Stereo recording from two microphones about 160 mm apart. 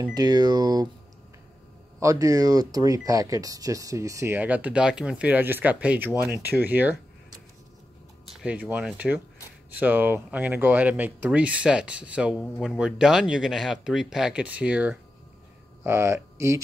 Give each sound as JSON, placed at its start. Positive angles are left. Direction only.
{"t": 0.1, "sound": "speech", "side_deg": -25}
{"t": 2.0, "sound": "speech", "side_deg": -20}